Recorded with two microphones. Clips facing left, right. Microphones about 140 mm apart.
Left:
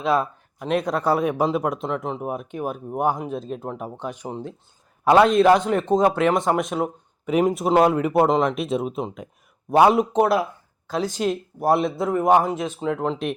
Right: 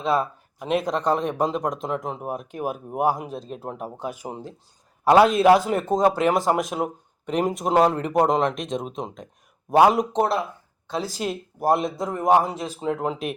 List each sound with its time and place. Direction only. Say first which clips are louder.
0.0 s speech: left 1 dB; centre (ahead or behind)